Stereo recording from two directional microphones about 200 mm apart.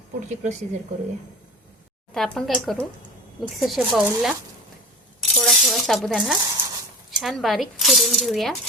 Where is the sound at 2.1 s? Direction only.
Centre (ahead or behind).